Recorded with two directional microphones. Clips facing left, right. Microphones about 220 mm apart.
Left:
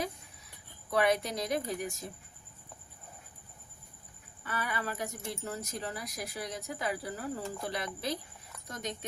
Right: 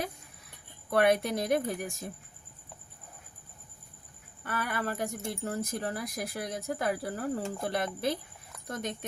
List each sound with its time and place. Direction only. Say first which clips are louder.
0.9 s speech: right 3 dB; 55° right (ahead or behind)
4.4 s speech: right 3 dB; 55° right (ahead or behind)